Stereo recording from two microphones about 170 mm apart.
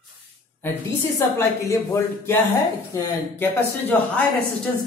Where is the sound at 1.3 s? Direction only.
20° left (ahead or behind).